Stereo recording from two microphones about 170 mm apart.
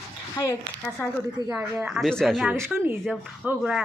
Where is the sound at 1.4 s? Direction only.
10° right (ahead or behind).